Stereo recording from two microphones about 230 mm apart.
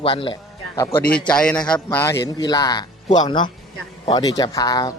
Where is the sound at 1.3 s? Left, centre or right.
Centre.